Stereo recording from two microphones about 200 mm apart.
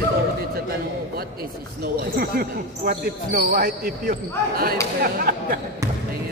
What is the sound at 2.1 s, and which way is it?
Speech, 50° right (ahead or behind).